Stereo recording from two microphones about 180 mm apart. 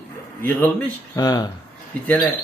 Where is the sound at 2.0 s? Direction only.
5° left (ahead or behind).